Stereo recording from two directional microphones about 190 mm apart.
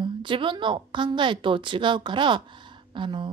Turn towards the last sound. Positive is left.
turn(degrees=-25)  # may be behind; listen again after turning